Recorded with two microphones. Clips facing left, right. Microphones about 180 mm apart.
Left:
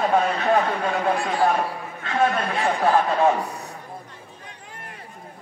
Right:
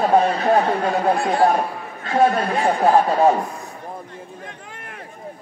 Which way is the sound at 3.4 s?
70° left (ahead or behind).